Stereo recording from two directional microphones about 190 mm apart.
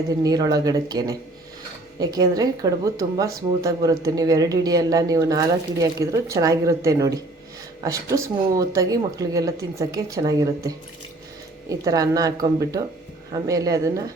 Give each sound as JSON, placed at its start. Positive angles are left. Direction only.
{"t": 0.1, "sound": "speech", "side_deg": -20}